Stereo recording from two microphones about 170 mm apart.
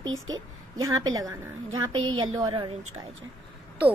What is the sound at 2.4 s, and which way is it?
Speech, 30° right (ahead or behind).